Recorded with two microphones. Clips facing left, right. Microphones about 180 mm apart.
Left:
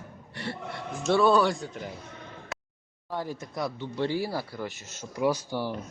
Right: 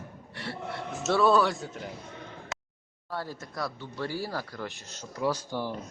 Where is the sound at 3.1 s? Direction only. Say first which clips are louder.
Left 3 dB; 15° left (ahead or behind).